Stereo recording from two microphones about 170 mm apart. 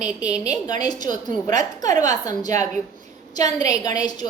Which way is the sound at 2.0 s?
20° left (ahead or behind).